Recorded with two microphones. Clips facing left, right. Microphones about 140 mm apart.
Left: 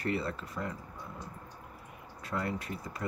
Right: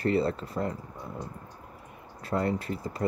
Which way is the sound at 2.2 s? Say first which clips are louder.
Right 7 dB; 35° right (ahead or behind).